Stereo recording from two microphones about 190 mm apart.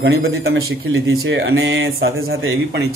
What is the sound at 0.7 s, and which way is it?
Speech, 90° right.